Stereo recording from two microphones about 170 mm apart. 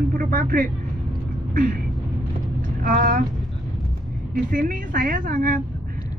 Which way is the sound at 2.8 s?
55° right (ahead or behind).